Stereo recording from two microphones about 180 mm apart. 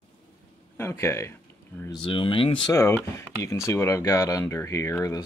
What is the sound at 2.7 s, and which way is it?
Speech, 15° left (ahead or behind).